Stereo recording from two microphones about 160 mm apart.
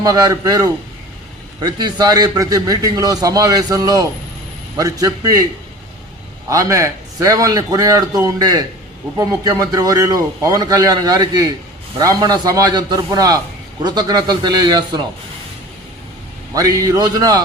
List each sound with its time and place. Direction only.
0.0 s a man's voice: 20° right (ahead or behind)
6.5 s a man's voice: 20° right (ahead or behind)
16.6 s a man's voice: 20° right (ahead or behind)